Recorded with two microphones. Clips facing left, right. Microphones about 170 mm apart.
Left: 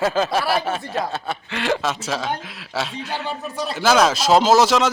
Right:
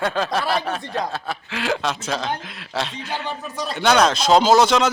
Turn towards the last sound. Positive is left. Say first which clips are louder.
# even
turn(degrees=0)  # may be behind; listen again after turning